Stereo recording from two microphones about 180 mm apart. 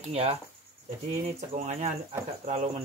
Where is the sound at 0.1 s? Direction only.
35° right (ahead or behind).